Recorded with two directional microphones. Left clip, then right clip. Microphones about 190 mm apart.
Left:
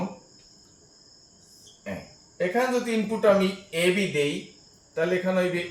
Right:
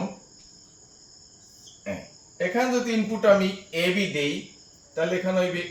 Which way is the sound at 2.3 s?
15° left (ahead or behind).